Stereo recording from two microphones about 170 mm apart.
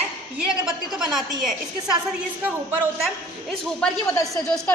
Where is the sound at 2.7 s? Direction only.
10° right (ahead or behind).